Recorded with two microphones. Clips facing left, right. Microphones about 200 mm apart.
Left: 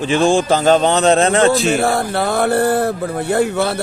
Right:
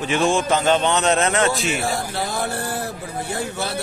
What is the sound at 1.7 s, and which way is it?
Speech, 60° left (ahead or behind).